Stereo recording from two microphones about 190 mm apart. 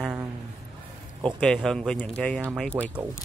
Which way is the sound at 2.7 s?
10° right (ahead or behind).